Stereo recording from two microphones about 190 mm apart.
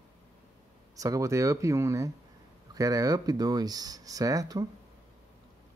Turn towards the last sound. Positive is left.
turn(degrees=-20)  # may be behind; listen again after turning